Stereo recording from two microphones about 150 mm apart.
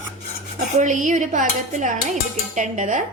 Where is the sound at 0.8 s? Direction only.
55° right (ahead or behind).